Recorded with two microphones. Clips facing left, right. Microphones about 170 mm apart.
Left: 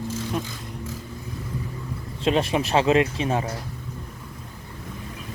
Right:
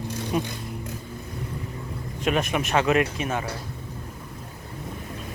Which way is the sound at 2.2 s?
30° left (ahead or behind).